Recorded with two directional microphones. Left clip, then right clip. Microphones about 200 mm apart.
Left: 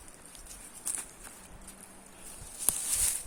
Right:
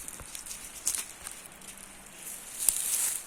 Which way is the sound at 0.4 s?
50° left (ahead or behind).